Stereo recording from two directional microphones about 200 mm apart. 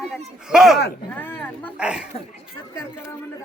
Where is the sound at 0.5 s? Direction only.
Centre (ahead or behind).